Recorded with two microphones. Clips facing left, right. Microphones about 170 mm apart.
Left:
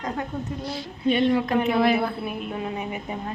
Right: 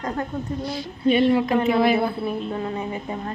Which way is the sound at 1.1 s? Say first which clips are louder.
Right 3 dB; 5° right (ahead or behind).